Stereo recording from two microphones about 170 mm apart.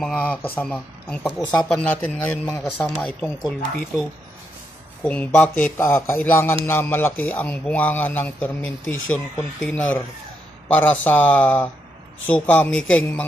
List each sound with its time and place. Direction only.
0.0 s speech: 10° left (ahead or behind)
2.4 s speech: 15° left (ahead or behind)
3.0 s speech: 5° left (ahead or behind)
5.0 s speech: 10° left (ahead or behind)